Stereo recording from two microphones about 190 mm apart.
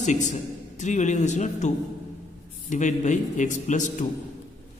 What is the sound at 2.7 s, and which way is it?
A man's voice, 40° left (ahead or behind).